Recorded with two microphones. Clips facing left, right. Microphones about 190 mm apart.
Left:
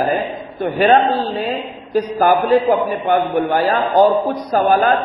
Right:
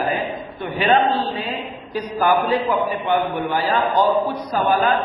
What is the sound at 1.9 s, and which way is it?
A man's voice, 45° left (ahead or behind).